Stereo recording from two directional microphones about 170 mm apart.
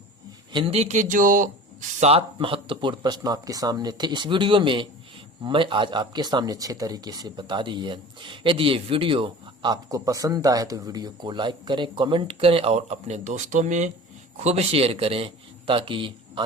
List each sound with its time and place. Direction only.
0.5 s speech: 35° right (ahead or behind)
2.0 s a man's voice: 35° right (ahead or behind)